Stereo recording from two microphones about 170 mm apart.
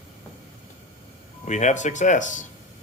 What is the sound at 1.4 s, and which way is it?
Speech, 45° left (ahead or behind).